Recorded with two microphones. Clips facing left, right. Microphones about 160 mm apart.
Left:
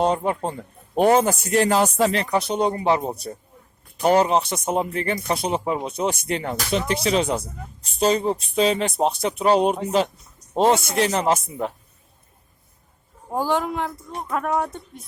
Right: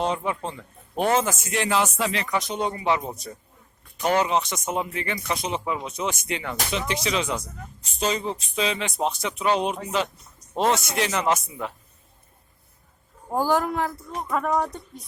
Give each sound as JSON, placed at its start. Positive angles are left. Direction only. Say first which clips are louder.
{"t": 0.0, "sound": "speech", "louder": "left 5 dB", "side_deg": 40}
{"t": 13.3, "sound": "speech", "louder": "even", "side_deg": 0}